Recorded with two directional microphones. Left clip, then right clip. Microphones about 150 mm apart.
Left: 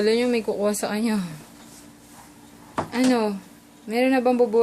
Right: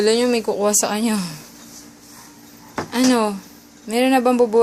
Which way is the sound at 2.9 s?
15° right (ahead or behind).